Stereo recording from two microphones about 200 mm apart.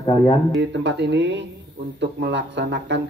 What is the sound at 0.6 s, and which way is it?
Speech, 60° right (ahead or behind).